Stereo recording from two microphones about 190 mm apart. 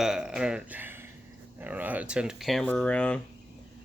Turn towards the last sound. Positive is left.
turn(degrees=5)  # may be behind; listen again after turning